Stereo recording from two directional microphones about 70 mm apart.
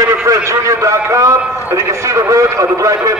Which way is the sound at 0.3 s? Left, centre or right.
Right.